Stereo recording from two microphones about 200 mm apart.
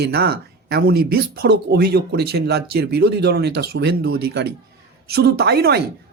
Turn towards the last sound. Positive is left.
turn(degrees=-55)  # may be behind; listen again after turning